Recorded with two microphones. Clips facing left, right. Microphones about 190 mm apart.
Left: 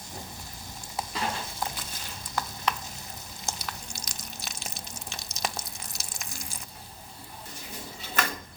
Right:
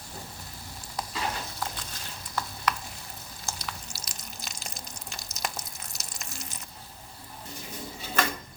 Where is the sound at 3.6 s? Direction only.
5° right (ahead or behind).